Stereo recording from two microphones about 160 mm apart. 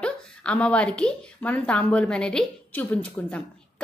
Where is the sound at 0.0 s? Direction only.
5° left (ahead or behind).